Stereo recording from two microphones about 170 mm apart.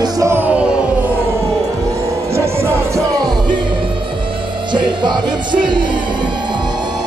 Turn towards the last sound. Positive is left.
turn(degrees=-25)  # may be behind; listen again after turning